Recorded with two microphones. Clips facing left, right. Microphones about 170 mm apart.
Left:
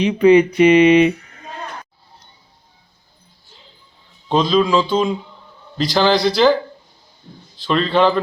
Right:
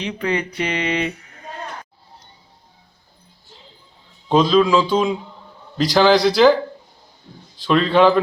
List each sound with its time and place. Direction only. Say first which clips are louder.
0.0 s a sound: left 12 dB; 15° left (ahead or behind)
4.3 s speech: right 1 dB; 5° right (ahead or behind)
7.6 s speech: right 1 dB; 10° right (ahead or behind)